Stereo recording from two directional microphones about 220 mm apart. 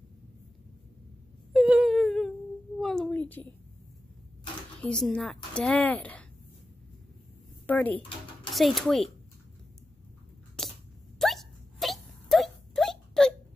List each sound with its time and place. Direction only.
1.5 s whimper: centre (ahead or behind)
2.8 s a sound: centre (ahead or behind)
4.8 s a woman's voice: 5° left (ahead or behind)
7.6 s a woman's voice: 5° left (ahead or behind)
10.6 s a sound: 5° left (ahead or behind)
11.1 s wail: centre (ahead or behind)